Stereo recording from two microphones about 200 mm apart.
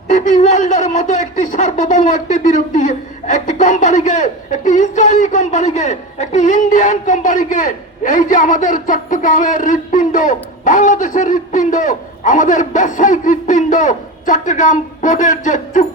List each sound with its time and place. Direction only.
0.1 s speech: 35° left (ahead or behind)